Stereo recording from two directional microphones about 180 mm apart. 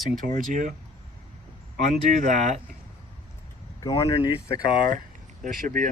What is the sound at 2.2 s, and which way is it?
Speech, 45° right (ahead or behind).